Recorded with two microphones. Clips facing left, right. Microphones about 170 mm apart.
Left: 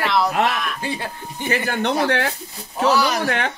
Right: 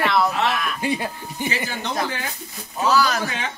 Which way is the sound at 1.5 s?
60° left (ahead or behind).